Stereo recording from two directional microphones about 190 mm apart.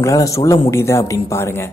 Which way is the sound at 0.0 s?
15° left (ahead or behind).